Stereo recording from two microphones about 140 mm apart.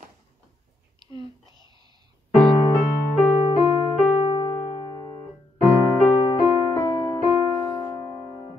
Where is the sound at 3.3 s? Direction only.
40° left (ahead or behind).